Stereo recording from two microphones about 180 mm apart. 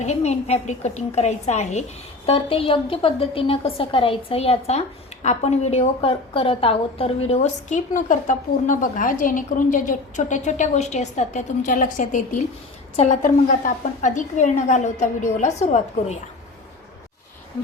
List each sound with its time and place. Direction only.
0.0 s a woman's voice: 40° left (ahead or behind)